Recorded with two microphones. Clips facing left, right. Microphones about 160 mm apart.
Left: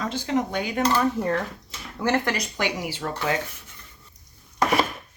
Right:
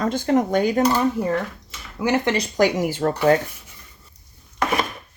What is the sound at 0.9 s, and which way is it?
Speech, 15° right (ahead or behind).